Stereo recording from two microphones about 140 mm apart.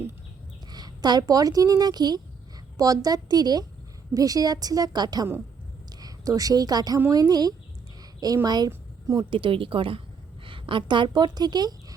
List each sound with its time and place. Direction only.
0.7 s a woman's voice: 30° right (ahead or behind)
9.3 s a woman's voice: 40° right (ahead or behind)